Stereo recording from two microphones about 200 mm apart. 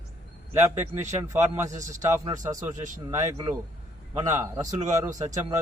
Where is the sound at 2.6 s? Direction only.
40° right (ahead or behind).